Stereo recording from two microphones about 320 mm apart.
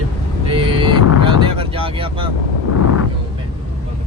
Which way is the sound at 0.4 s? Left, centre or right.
Centre.